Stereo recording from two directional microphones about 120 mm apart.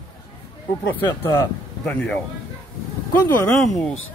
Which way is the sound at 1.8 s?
5° left (ahead or behind).